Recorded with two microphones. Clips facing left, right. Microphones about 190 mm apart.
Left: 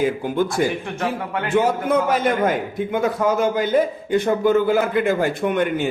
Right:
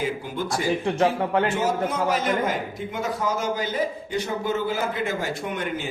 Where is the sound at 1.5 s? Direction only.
55° left (ahead or behind).